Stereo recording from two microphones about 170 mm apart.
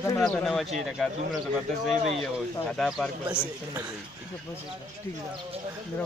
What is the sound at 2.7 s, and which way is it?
Speech, centre (ahead or behind).